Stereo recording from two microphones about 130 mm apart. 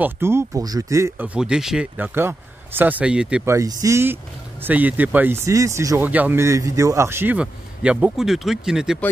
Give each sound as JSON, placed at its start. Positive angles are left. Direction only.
{"t": 0.0, "sound": "speech", "side_deg": -20}
{"t": 1.2, "sound": "speech", "side_deg": -10}
{"t": 2.1, "sound": "speech", "side_deg": -15}
{"t": 3.4, "sound": "speech", "side_deg": -25}